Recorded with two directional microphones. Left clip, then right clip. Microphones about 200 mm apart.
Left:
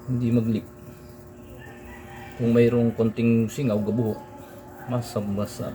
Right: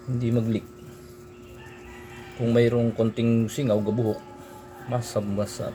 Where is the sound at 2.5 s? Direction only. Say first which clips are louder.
Left 2 dB; 35° right (ahead or behind).